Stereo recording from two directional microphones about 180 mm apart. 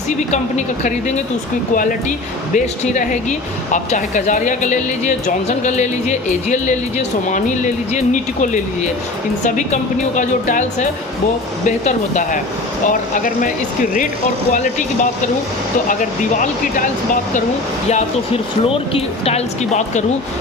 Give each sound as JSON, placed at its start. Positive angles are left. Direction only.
{"t": 0.3, "sound": "speech", "side_deg": 40}
{"t": 14.5, "sound": "speech", "side_deg": 45}
{"t": 15.9, "sound": "speech", "side_deg": 45}
{"t": 18.6, "sound": "speech", "side_deg": 30}